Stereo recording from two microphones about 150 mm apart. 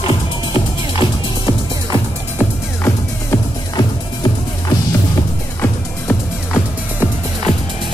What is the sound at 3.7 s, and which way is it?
Music, 25° left (ahead or behind).